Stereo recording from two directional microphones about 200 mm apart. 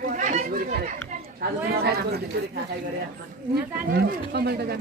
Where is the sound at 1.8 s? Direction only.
50° right (ahead or behind).